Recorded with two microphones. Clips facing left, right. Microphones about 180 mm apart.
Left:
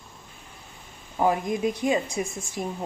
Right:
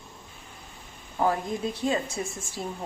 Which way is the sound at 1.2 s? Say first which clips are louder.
Left 3 dB; 15° left (ahead or behind).